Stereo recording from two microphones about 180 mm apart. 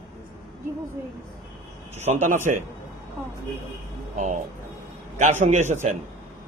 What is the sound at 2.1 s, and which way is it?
Speech, 35° right (ahead or behind).